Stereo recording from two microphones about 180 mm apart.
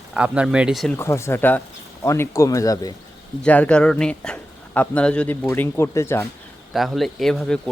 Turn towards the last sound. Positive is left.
turn(degrees=5)  # may be behind; listen again after turning